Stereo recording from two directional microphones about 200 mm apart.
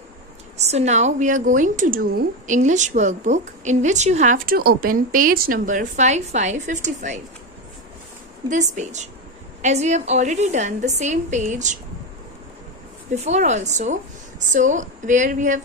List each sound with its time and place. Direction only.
0.6 s a woman's voice: 35° right (ahead or behind)
8.5 s a woman's voice: 35° right (ahead or behind)
13.1 s a woman's voice: 35° right (ahead or behind)